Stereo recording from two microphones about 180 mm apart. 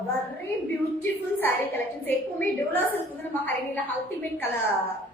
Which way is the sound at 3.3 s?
10° left (ahead or behind).